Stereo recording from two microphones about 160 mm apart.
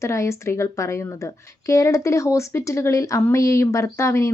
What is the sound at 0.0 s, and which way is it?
Speech, 20° left (ahead or behind).